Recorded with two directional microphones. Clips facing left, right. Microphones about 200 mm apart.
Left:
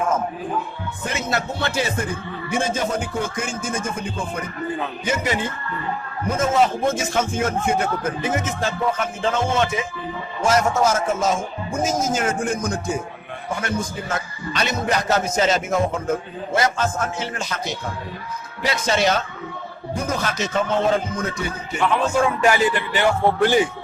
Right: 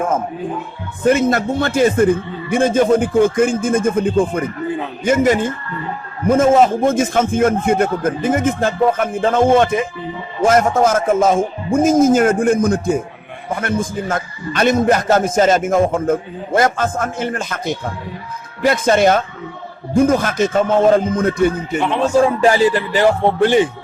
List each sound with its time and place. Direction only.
1.0 s a man's voice: 50° right (ahead or behind)
21.8 s a man's voice: 30° right (ahead or behind)
23.2 s a man's voice: 25° right (ahead or behind)